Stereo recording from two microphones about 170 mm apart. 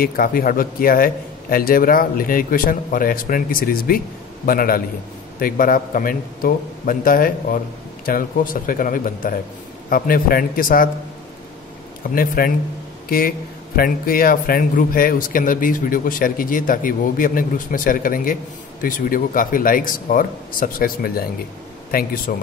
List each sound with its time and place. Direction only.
0.0 s speech: 60° left (ahead or behind)
12.2 s speech: 55° left (ahead or behind)
13.7 s speech: 60° left (ahead or behind)